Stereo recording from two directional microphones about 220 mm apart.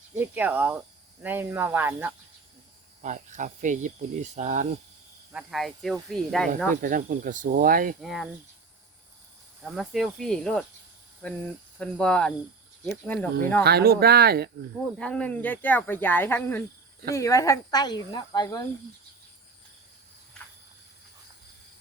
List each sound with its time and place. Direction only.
0.2 s speech: 10° right (ahead or behind)
3.0 s speech: 35° right (ahead or behind)
5.3 s speech: 5° right (ahead or behind)
6.8 s speech: 40° right (ahead or behind)
8.0 s speech: centre (ahead or behind)
9.6 s speech: centre (ahead or behind)
11.8 s speech: 5° left (ahead or behind)
13.7 s speech: 45° right (ahead or behind)
14.9 s speech: 5° left (ahead or behind)